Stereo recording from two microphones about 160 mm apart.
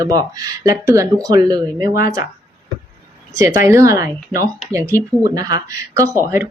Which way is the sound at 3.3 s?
20° right (ahead or behind).